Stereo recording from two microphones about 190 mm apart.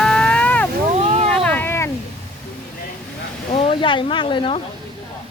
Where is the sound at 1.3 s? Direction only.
10° left (ahead or behind).